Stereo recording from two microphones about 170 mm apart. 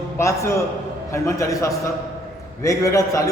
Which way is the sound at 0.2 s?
15° left (ahead or behind).